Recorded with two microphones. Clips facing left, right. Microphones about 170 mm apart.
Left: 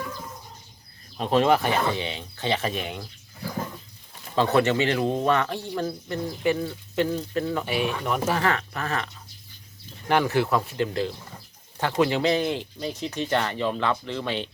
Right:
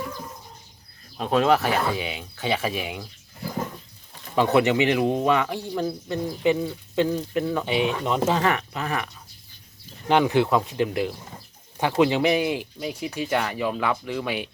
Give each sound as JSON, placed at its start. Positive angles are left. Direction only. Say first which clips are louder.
{"t": 1.2, "sound": "speech", "louder": "even", "side_deg": 0}
{"t": 4.4, "sound": "speech", "louder": "right 2 dB", "side_deg": -15}
{"t": 10.1, "sound": "speech", "louder": "right 3 dB", "side_deg": -15}